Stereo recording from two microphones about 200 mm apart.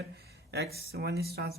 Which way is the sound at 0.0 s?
55° right (ahead or behind).